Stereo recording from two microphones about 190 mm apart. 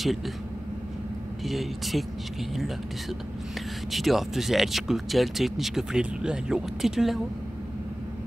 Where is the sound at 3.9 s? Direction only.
Centre (ahead or behind).